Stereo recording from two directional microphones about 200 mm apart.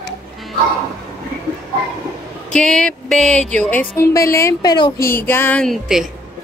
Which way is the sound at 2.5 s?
5° left (ahead or behind).